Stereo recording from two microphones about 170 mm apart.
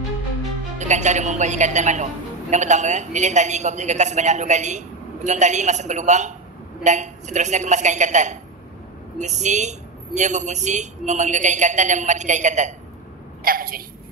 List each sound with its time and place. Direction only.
0.7 s a man's voice: 45° right (ahead or behind)
13.4 s a woman's voice: 60° right (ahead or behind)